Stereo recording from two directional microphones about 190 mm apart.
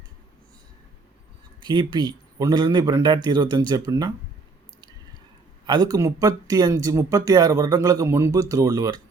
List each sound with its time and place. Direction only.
1.6 s speech: 20° right (ahead or behind)
5.6 s speech: 20° right (ahead or behind)